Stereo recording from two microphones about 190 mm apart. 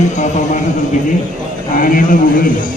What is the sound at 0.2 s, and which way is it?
Speech, 40° left (ahead or behind).